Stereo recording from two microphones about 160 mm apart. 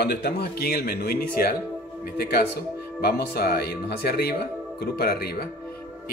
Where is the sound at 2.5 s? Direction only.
90° left.